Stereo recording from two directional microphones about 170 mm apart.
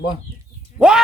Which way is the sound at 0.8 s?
5° right (ahead or behind).